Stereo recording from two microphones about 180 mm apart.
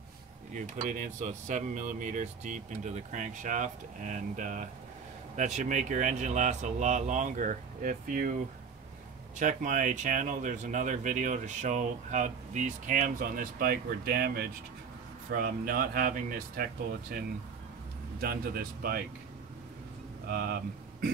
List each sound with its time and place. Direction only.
0.6 s speech: 45° right (ahead or behind)
9.4 s speech: 45° right (ahead or behind)
18.2 s speech: 55° right (ahead or behind)
20.2 s speech: 60° right (ahead or behind)